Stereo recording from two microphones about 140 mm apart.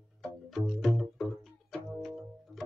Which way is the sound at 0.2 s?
Centre (ahead or behind).